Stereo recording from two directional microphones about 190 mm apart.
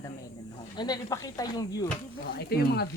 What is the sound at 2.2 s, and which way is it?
Speech, 55° left (ahead or behind).